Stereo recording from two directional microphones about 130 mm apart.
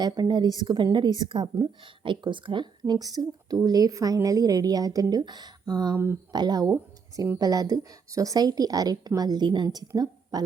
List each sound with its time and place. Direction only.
0.0 s a woman's voice: 35° right (ahead or behind)